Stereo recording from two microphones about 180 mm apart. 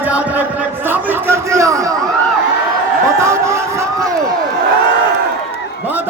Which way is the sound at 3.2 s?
15° right (ahead or behind).